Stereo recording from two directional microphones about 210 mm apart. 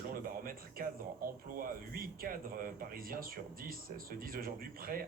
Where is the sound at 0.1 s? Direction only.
45° right (ahead or behind).